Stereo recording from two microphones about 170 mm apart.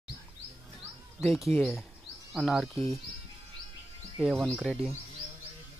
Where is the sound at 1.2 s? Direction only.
Centre (ahead or behind).